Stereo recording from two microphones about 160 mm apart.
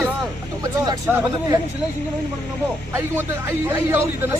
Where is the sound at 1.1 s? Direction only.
10° right (ahead or behind).